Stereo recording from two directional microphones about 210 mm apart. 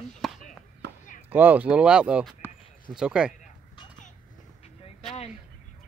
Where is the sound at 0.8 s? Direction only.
50° right (ahead or behind).